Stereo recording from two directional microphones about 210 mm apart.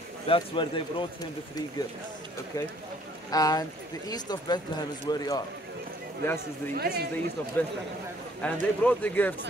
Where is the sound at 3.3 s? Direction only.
15° left (ahead or behind).